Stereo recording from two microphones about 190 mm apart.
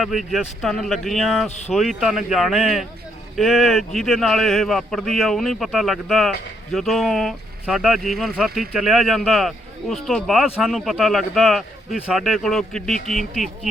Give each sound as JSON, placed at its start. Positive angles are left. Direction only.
{"t": 0.0, "sound": "speech", "side_deg": 0}
{"t": 1.5, "sound": "speech", "side_deg": 35}
{"t": 1.7, "sound": "speech", "side_deg": 0}